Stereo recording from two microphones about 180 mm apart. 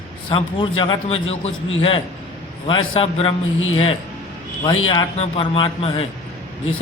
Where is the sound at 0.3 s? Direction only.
25° left (ahead or behind).